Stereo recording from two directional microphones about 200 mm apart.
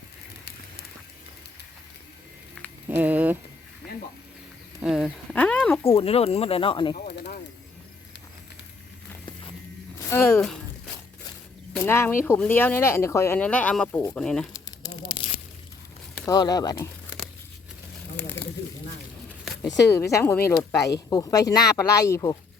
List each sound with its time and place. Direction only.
2.6 s a sound: 5° left (ahead or behind)
2.9 s speech: 10° right (ahead or behind)
4.8 s speech: 5° right (ahead or behind)
5.4 s speech: 10° left (ahead or behind)
6.0 s speech: 30° left (ahead or behind)
6.9 s a sound: 50° left (ahead or behind)
10.1 s speech: 10° left (ahead or behind)
11.7 s speech: 10° left (ahead or behind)
14.5 s crumpling: 20° left (ahead or behind)
16.2 s speech: 20° left (ahead or behind)
19.9 s speech: 15° left (ahead or behind)